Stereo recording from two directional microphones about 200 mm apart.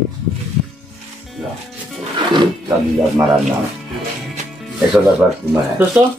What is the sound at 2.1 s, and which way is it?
Music, 25° right (ahead or behind).